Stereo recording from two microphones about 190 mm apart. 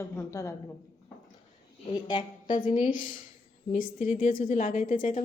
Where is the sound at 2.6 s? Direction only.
40° left (ahead or behind).